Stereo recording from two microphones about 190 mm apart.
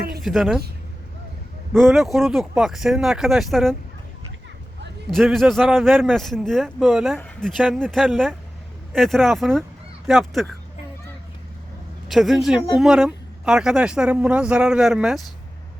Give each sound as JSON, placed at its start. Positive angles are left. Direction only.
{"t": 0.2, "sound": "speech", "side_deg": 0}
{"t": 1.7, "sound": "speech", "side_deg": 0}
{"t": 5.1, "sound": "speech", "side_deg": 0}
{"t": 12.0, "sound": "speech", "side_deg": 0}